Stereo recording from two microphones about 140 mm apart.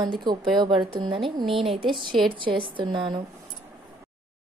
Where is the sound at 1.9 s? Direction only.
Centre (ahead or behind).